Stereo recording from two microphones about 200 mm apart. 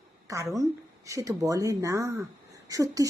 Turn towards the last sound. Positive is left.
turn(degrees=-15)  # may be behind; listen again after turning